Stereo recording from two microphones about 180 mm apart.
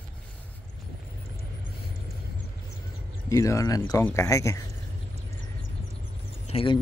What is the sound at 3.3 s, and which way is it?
Speech, 15° left (ahead or behind).